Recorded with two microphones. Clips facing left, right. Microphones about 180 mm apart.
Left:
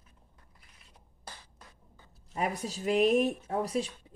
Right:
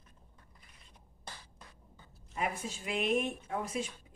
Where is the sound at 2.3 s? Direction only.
40° left (ahead or behind).